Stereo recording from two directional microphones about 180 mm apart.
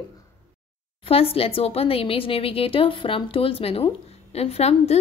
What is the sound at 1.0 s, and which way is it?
A woman's voice, 30° left (ahead or behind).